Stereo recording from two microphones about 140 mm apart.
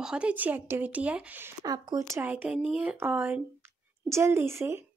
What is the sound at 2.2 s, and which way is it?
Speech, 10° right (ahead or behind).